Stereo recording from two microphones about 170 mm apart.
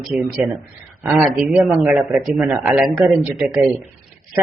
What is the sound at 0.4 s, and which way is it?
A man's voice, 10° right (ahead or behind).